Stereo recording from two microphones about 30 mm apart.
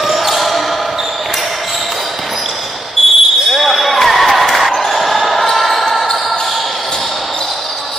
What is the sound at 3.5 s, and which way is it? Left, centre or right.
Basketball bounce, centre.